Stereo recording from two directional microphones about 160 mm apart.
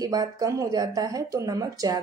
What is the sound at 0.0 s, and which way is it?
A woman's voice, 20° right (ahead or behind).